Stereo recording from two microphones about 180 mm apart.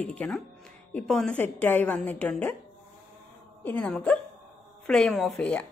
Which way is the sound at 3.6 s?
5° left (ahead or behind).